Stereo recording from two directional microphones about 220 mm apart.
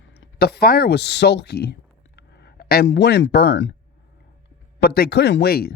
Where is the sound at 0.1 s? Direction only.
45° left (ahead or behind).